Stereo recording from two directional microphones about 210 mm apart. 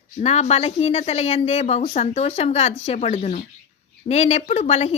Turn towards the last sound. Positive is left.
turn(degrees=30)  # may be behind; listen again after turning